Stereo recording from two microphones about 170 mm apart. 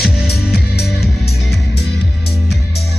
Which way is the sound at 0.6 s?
65° left (ahead or behind).